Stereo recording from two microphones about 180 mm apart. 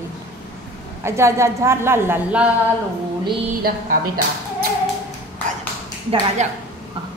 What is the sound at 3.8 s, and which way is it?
Speech, 55° right (ahead or behind).